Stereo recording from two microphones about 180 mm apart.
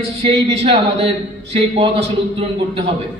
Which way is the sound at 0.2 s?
35° right (ahead or behind).